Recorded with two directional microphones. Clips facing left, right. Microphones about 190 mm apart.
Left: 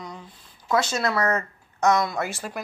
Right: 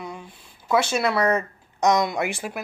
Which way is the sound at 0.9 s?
10° right (ahead or behind).